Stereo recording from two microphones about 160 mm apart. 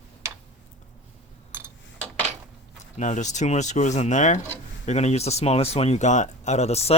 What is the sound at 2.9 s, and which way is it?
Speech, 50° left (ahead or behind).